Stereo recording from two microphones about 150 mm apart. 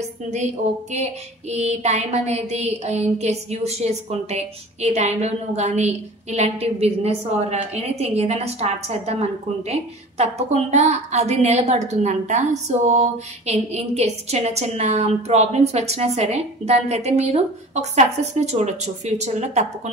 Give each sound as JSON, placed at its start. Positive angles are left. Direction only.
{"t": 1.5, "sound": "a woman's voice", "side_deg": -45}